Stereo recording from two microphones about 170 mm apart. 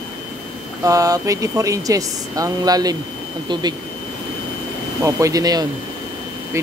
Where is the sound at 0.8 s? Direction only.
20° right (ahead or behind).